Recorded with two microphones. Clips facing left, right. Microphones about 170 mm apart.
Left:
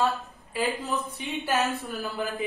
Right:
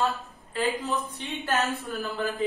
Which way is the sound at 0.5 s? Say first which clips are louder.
Right 1 dB; 15° left (ahead or behind).